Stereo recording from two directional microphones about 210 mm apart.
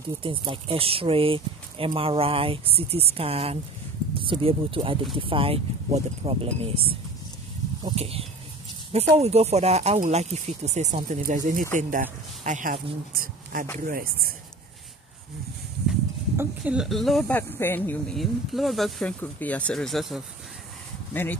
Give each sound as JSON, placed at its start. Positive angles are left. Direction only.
{"t": 0.2, "sound": "speech", "side_deg": -25}
{"t": 15.9, "sound": "speech", "side_deg": -5}